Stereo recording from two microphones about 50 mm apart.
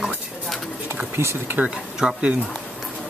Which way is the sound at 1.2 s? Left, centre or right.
Right.